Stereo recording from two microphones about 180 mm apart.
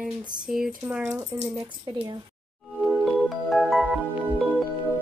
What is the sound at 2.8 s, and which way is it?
Music, 5° right (ahead or behind).